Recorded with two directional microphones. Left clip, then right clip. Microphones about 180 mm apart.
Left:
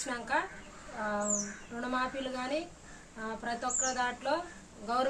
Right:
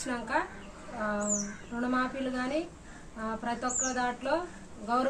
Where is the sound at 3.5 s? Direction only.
20° left (ahead or behind).